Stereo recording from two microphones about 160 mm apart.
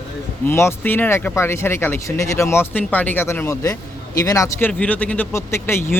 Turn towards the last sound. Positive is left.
turn(degrees=15)  # may be behind; listen again after turning